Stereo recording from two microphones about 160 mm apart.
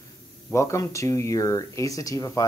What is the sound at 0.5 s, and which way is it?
Speech, 20° left (ahead or behind).